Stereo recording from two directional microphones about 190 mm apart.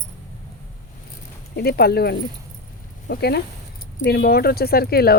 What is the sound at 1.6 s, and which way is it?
Speech, 55° left (ahead or behind).